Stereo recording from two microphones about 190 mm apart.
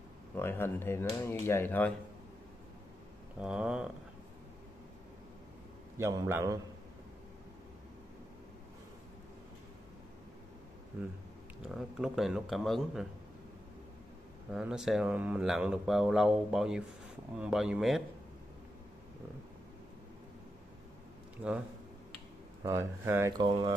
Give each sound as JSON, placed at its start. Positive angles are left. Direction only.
{"t": 0.4, "sound": "speech", "side_deg": 10}
{"t": 3.3, "sound": "speech", "side_deg": -5}
{"t": 5.9, "sound": "a man's voice", "side_deg": -15}
{"t": 11.7, "sound": "speech", "side_deg": 0}
{"t": 14.5, "sound": "speech", "side_deg": -5}
{"t": 22.6, "sound": "speech", "side_deg": -15}